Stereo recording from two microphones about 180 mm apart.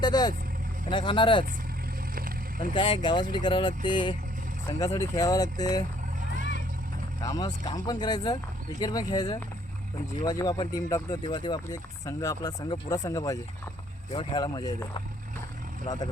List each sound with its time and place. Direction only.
0.0 s speech: 20° left (ahead or behind)
2.1 s vehicle: 50° right (ahead or behind)
2.7 s speech: 25° left (ahead or behind)
6.3 s vehicle: 45° right (ahead or behind)
7.2 s speech: 20° left (ahead or behind)